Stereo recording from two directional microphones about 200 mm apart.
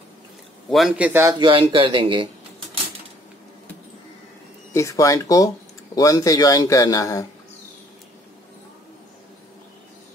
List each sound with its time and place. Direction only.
0.7 s a man's voice: centre (ahead or behind)
1.4 s speech: 25° right (ahead or behind)
4.7 s a man's voice: 15° left (ahead or behind)